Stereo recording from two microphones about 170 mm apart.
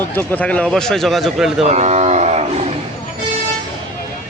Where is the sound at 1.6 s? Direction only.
40° right (ahead or behind).